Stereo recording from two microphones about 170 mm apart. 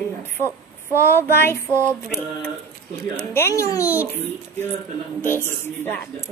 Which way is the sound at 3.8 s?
10° right (ahead or behind).